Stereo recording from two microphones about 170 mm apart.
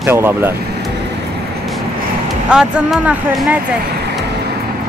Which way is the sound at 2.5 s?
5° right (ahead or behind).